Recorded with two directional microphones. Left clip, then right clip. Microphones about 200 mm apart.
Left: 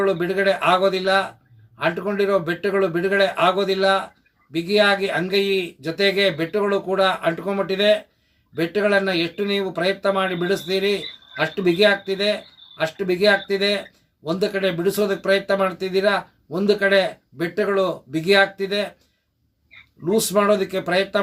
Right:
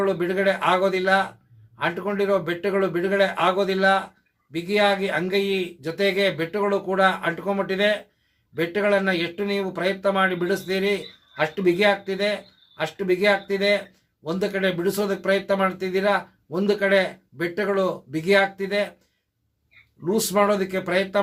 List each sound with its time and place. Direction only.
0.0 s speech: 5° right (ahead or behind)
20.1 s speech: 10° right (ahead or behind)